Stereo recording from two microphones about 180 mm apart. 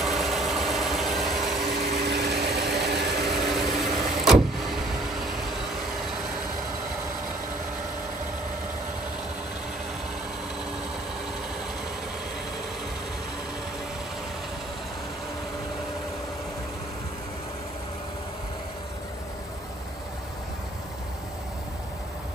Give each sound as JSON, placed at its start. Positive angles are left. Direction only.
{"t": 0.0, "sound": "vehicle", "side_deg": 0}
{"t": 1.8, "sound": "vehicle", "side_deg": -65}
{"t": 3.3, "sound": "vehicle", "side_deg": 0}